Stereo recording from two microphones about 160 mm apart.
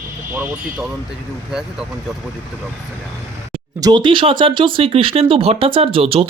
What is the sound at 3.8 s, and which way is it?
Speech, 30° right (ahead or behind).